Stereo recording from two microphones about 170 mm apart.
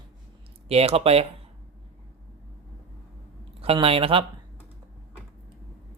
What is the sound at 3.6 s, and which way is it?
Speech, 35° right (ahead or behind).